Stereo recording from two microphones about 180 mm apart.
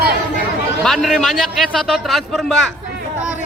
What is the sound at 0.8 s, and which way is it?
A man's voice, centre (ahead or behind).